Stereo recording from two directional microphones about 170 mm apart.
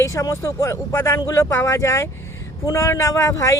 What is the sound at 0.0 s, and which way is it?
Speech, 20° left (ahead or behind).